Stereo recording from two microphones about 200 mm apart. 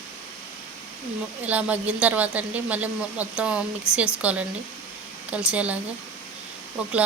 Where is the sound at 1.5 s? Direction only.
5° right (ahead or behind).